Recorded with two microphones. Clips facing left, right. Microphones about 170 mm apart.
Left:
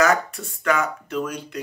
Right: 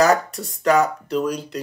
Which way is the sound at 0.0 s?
35° right (ahead or behind).